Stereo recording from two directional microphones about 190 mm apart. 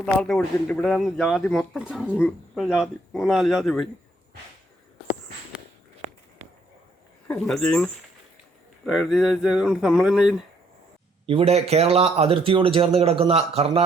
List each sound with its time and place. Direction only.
0.0 s speech: 5° left (ahead or behind)
6.4 s a sound: 35° right (ahead or behind)
7.3 s speech: centre (ahead or behind)
11.3 s speech: 30° right (ahead or behind)